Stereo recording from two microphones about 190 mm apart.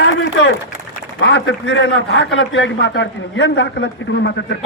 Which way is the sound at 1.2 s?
75° left (ahead or behind).